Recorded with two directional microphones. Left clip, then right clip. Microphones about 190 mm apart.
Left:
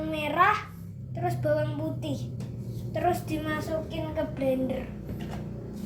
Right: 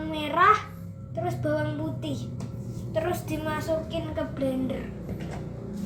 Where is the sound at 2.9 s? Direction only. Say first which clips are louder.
Left 1 dB; 15° left (ahead or behind).